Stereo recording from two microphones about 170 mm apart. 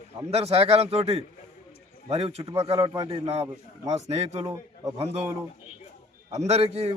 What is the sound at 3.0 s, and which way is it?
Speech, 35° right (ahead or behind).